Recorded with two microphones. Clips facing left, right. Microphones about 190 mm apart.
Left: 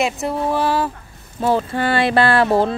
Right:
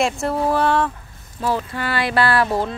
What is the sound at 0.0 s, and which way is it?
Speech, centre (ahead or behind).